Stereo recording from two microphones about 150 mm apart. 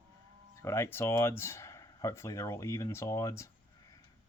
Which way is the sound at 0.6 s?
20° left (ahead or behind).